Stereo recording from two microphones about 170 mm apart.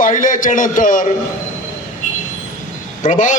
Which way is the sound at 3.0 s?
50° left (ahead or behind).